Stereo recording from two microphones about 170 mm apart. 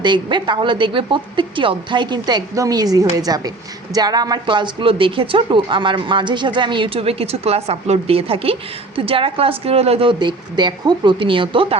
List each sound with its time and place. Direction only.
0.0 s a woman's voice: 25° right (ahead or behind)